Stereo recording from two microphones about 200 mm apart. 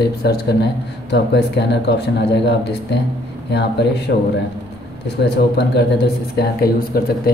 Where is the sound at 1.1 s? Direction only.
60° left (ahead or behind).